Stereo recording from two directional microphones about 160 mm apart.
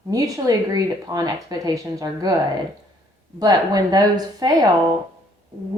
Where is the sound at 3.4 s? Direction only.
25° right (ahead or behind).